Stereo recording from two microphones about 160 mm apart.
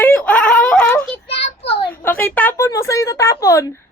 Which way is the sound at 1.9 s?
10° left (ahead or behind).